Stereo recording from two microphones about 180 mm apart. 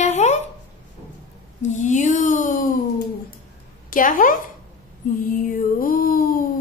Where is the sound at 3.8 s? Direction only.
50° left (ahead or behind).